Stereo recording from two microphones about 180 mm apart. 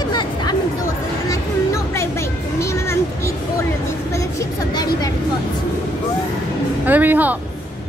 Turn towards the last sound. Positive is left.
turn(degrees=-10)  # may be behind; listen again after turning